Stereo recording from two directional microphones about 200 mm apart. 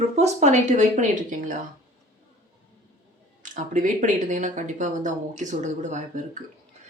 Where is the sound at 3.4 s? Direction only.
40° right (ahead or behind).